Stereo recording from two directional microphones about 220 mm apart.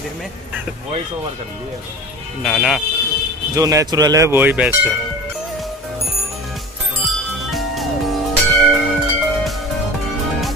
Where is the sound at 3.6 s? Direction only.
15° right (ahead or behind).